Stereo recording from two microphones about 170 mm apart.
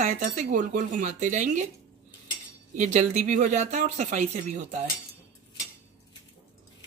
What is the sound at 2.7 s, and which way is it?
Speech, 45° right (ahead or behind).